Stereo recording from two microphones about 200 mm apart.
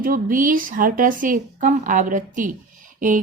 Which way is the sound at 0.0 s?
45° right (ahead or behind).